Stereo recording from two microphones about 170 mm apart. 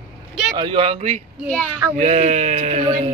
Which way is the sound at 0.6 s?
30° right (ahead or behind).